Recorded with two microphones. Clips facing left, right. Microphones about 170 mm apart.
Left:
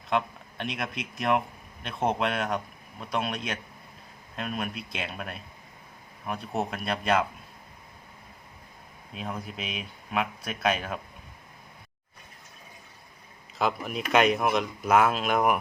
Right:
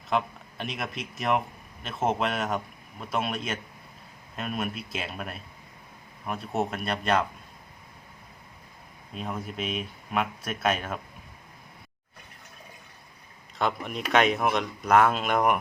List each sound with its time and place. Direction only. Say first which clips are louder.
0.1 s speech: even; centre (ahead or behind)
9.1 s speech: right 2 dB; centre (ahead or behind)
13.6 s speech: left 1 dB; centre (ahead or behind)